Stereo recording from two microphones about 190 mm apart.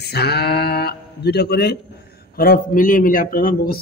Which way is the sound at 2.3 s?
50° left (ahead or behind).